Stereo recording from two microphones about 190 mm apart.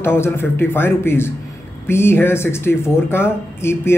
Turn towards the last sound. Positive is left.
turn(degrees=15)  # may be behind; listen again after turning